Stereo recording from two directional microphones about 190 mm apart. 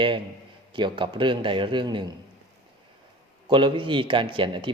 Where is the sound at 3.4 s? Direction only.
25° right (ahead or behind).